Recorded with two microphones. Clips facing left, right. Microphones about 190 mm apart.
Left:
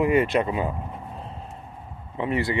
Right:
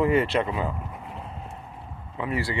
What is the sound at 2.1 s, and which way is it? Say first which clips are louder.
Speech: left 3 dB; 25° left (ahead or behind).